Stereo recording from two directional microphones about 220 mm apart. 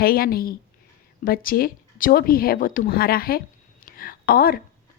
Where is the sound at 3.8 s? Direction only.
40° left (ahead or behind).